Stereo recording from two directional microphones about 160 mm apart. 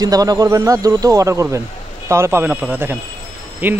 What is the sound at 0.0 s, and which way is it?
Speech, 25° right (ahead or behind).